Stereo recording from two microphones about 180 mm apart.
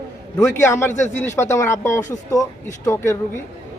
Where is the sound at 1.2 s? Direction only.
15° left (ahead or behind).